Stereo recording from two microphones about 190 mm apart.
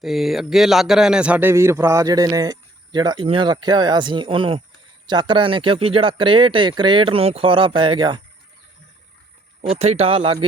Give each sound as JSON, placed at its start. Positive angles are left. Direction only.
{"t": 0.0, "sound": "a man's voice", "side_deg": 0}
{"t": 9.6, "sound": "speech", "side_deg": -35}